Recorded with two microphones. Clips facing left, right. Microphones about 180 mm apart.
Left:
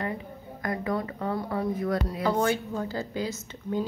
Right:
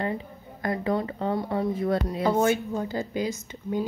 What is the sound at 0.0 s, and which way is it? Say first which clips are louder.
A woman's voice: right 3 dB; 25° right (ahead or behind).